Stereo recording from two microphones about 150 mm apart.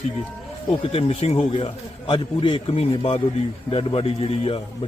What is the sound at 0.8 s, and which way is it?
Speech, 40° left (ahead or behind).